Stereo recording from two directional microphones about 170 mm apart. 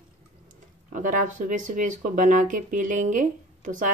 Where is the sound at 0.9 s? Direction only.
50° right (ahead or behind).